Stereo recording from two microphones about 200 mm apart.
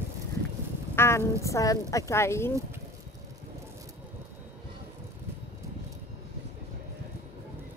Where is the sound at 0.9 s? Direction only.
10° left (ahead or behind).